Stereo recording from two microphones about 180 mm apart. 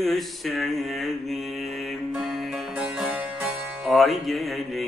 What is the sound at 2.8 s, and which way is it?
Music, 10° right (ahead or behind).